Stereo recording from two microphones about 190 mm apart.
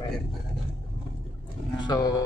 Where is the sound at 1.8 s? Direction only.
20° left (ahead or behind).